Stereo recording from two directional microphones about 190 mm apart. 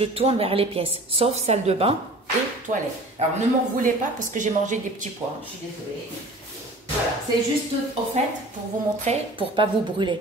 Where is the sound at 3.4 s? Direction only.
40° right (ahead or behind).